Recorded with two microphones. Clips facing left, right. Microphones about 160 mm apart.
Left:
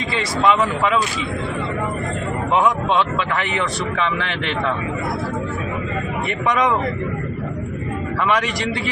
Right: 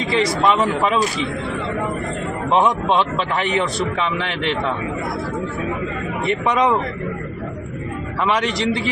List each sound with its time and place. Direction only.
0.4 s speech: 30° right (ahead or behind)
3.2 s speech: 25° right (ahead or behind)
6.5 s speech: 30° right (ahead or behind)
8.3 s speech: 25° right (ahead or behind)